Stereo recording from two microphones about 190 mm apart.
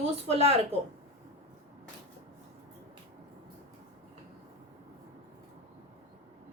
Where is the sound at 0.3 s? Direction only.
35° right (ahead or behind).